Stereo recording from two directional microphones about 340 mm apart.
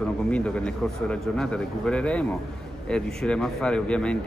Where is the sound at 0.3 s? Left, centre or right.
Centre.